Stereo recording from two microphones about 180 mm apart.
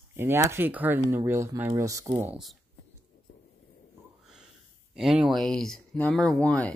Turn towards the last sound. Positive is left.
turn(degrees=5)  # may be behind; listen again after turning